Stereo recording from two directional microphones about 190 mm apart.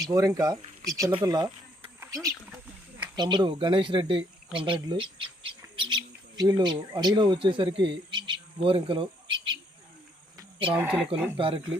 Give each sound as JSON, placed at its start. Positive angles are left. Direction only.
{"t": 0.0, "sound": "speech", "side_deg": -20}
{"t": 2.0, "sound": "a sound", "side_deg": -20}
{"t": 3.2, "sound": "speech", "side_deg": -25}
{"t": 8.1, "sound": "bird", "side_deg": -25}
{"t": 10.7, "sound": "speech", "side_deg": -10}
{"t": 11.3, "sound": "speech", "side_deg": -25}